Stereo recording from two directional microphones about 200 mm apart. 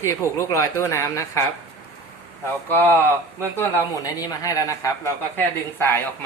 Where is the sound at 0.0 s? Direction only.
15° left (ahead or behind).